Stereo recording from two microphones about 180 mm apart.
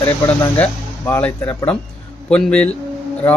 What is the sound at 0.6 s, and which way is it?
Speech, 10° left (ahead or behind).